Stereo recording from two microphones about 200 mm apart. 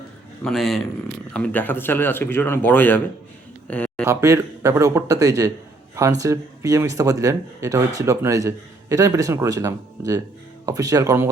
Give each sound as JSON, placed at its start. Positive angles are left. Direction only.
{"t": 0.4, "sound": "a man's voice", "side_deg": 0}
{"t": 3.7, "sound": "a sound", "side_deg": 5}
{"t": 4.0, "sound": "a man's voice", "side_deg": -15}